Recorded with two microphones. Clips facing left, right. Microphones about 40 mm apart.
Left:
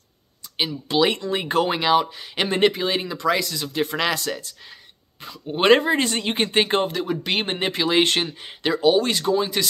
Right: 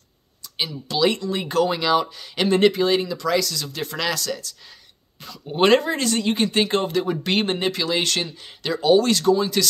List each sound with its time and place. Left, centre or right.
0.6 s speech: left
6.9 s speech: centre
7.4 s speech: left
8.8 s speech: centre